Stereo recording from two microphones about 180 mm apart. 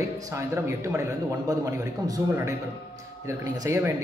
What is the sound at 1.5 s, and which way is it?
A man's voice, 20° right (ahead or behind).